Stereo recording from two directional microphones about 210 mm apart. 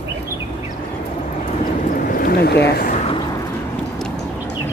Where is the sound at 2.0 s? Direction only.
45° left (ahead or behind).